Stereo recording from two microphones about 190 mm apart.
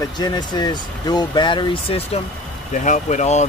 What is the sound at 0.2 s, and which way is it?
Speech, 20° left (ahead or behind).